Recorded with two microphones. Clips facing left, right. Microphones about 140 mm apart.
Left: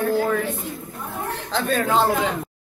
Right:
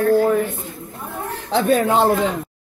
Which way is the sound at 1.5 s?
65° right (ahead or behind).